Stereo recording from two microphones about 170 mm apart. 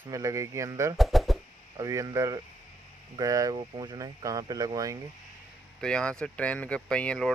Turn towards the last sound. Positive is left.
turn(degrees=5)  # may be behind; listen again after turning